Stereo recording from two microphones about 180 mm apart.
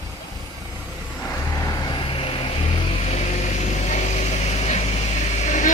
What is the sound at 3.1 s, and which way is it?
Vehicle, 40° left (ahead or behind).